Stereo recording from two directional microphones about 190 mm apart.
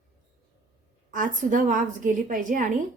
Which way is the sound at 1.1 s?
45° right (ahead or behind).